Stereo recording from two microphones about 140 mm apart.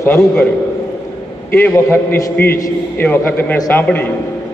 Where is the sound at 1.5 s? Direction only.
15° left (ahead or behind).